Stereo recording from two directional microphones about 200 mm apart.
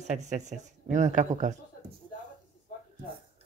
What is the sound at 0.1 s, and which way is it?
Speech, 35° right (ahead or behind).